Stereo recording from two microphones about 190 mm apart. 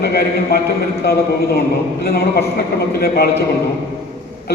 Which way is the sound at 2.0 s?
55° left (ahead or behind).